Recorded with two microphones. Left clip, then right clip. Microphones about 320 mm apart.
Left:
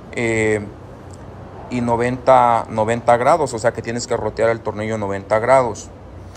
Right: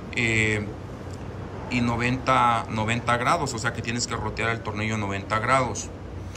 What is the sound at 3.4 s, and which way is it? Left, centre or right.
Speech, centre.